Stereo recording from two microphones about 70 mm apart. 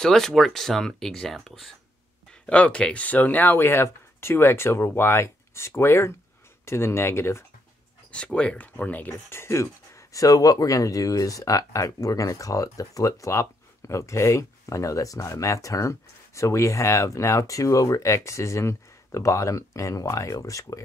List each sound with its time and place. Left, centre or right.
0.0 s speech: centre
2.4 s speech: centre; by 7.4 s left
8.1 s speech: centre; by 20.8 s left